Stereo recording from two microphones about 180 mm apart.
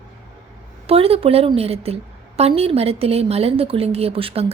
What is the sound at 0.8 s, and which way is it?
A woman's voice, 35° right (ahead or behind).